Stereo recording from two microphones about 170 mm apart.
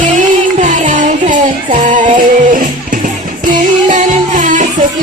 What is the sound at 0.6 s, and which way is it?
Music, 50° right (ahead or behind).